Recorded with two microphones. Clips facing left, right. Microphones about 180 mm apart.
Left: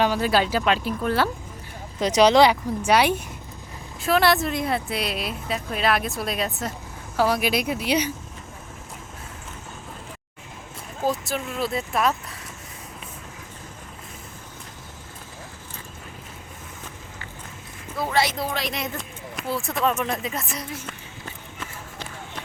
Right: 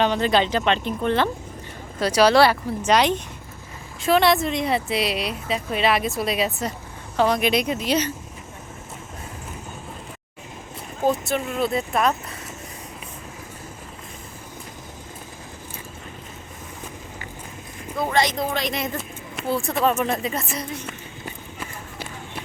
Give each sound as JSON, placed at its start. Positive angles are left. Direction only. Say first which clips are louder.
{"t": 0.0, "sound": "speech", "louder": "right 1 dB", "side_deg": 5}
{"t": 2.0, "sound": "speech", "louder": "even", "side_deg": 20}
{"t": 11.3, "sound": "speech", "louder": "right 4 dB", "side_deg": 0}
{"t": 18.1, "sound": "speech", "louder": "right 1 dB", "side_deg": 5}
{"t": 21.2, "sound": "run", "louder": "right 2 dB", "side_deg": -10}